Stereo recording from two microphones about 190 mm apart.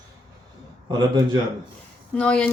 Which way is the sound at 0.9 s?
25° right (ahead or behind).